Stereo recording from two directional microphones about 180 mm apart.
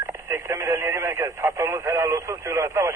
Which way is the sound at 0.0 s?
15° right (ahead or behind).